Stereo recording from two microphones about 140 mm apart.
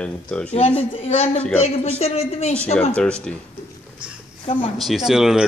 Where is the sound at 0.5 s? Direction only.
40° left (ahead or behind).